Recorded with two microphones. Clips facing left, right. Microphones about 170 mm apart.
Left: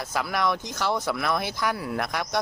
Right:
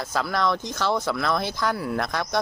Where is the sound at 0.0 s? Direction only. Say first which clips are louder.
Right 2 dB; 15° left (ahead or behind).